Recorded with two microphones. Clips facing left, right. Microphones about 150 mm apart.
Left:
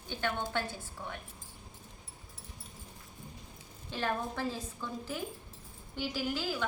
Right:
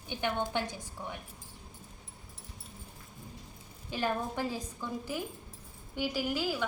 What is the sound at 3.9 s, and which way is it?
Speech, 10° right (ahead or behind).